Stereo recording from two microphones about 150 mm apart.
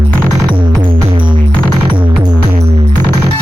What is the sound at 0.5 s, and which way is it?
Music, 35° right (ahead or behind).